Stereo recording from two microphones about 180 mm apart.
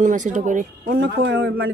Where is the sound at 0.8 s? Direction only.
65° right (ahead or behind); by 1.7 s 90° right.